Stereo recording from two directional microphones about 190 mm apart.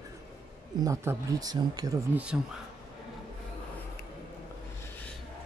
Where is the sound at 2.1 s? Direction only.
5° right (ahead or behind).